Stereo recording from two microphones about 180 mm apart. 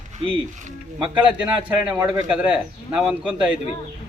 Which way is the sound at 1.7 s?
5° right (ahead or behind).